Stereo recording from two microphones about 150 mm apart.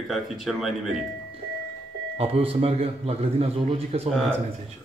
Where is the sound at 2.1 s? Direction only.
40° right (ahead or behind).